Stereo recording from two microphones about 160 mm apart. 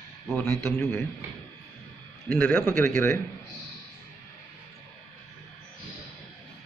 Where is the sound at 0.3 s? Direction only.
5° left (ahead or behind).